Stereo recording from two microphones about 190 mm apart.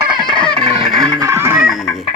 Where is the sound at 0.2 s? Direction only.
20° right (ahead or behind).